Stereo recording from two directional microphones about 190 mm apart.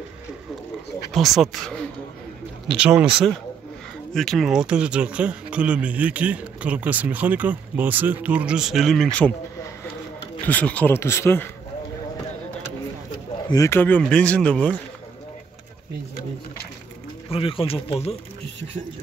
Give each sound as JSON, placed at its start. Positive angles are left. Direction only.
{"t": 1.1, "sound": "speech", "side_deg": 0}
{"t": 4.1, "sound": "speech", "side_deg": 0}
{"t": 10.4, "sound": "speech", "side_deg": 10}
{"t": 13.5, "sound": "speech", "side_deg": 15}
{"t": 17.3, "sound": "speech", "side_deg": 30}